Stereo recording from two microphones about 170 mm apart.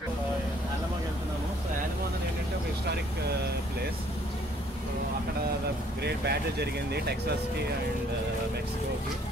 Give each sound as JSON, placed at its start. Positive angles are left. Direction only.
{"t": 6.0, "sound": "speech", "side_deg": -75}